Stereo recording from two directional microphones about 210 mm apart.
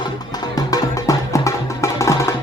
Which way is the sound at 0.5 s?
15° left (ahead or behind).